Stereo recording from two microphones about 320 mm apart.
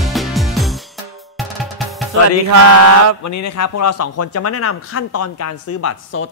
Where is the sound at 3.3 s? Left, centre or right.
Left.